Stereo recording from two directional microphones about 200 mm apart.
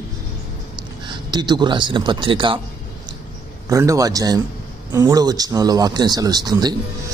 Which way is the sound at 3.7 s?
15° right (ahead or behind).